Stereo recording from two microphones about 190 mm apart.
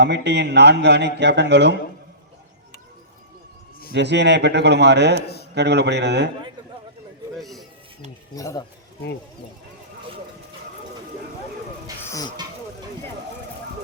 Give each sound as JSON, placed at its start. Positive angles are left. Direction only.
{"t": 0.0, "sound": "a man's voice", "side_deg": -65}
{"t": 3.9, "sound": "a man's voice", "side_deg": -65}
{"t": 5.2, "sound": "a man's voice", "side_deg": 60}
{"t": 5.5, "sound": "a man's voice", "side_deg": -65}
{"t": 7.3, "sound": "a sound", "side_deg": 0}
{"t": 8.4, "sound": "speech", "side_deg": 15}